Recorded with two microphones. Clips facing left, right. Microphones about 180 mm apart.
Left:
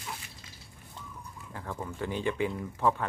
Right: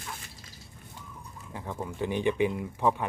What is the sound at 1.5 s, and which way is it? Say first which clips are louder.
Speech: right 2 dB; 15° right (ahead or behind).